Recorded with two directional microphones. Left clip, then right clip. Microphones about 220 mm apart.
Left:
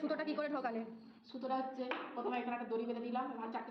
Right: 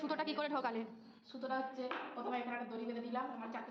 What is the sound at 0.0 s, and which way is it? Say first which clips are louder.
A woman's voice: even; 5° right (ahead or behind).